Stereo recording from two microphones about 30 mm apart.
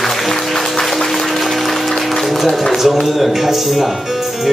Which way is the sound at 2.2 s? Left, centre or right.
Centre.